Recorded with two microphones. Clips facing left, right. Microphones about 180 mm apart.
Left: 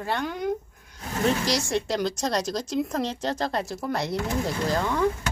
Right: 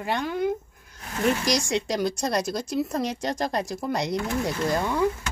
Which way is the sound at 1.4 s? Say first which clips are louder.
Right 1 dB; 15° right (ahead or behind).